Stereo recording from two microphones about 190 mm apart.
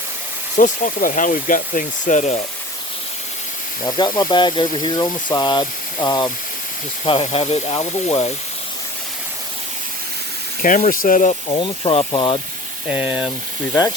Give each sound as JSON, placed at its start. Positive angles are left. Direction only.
{"t": 0.5, "sound": "speech", "side_deg": 45}
{"t": 3.8, "sound": "speech", "side_deg": 20}
{"t": 10.6, "sound": "speech", "side_deg": 45}
{"t": 12.9, "sound": "speech", "side_deg": -5}